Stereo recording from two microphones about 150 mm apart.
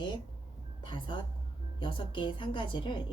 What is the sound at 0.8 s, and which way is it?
Speech, 30° left (ahead or behind).